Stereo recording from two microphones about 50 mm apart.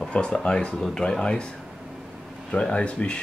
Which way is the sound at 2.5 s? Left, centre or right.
Left.